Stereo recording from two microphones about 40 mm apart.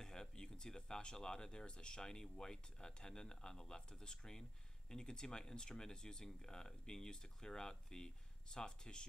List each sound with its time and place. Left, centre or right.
0.0 s speech: centre